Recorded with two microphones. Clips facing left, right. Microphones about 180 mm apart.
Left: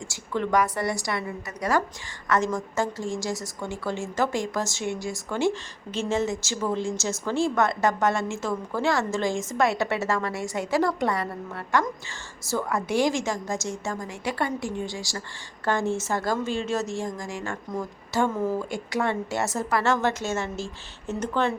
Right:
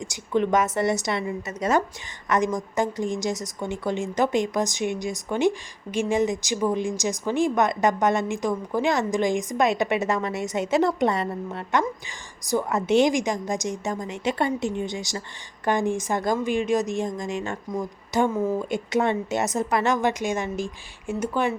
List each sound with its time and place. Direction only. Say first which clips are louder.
0.0 s a woman's voice: right 5 dB; 20° right (ahead or behind)